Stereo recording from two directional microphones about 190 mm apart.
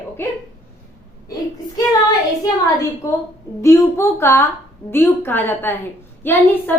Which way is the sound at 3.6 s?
15° left (ahead or behind).